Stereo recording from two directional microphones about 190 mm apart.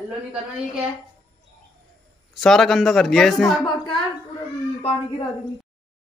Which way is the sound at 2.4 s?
Centre (ahead or behind).